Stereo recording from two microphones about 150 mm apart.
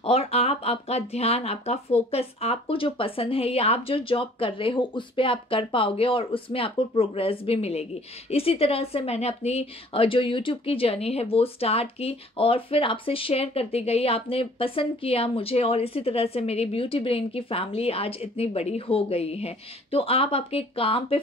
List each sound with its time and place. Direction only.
0.0 s a woman's voice: 40° left (ahead or behind)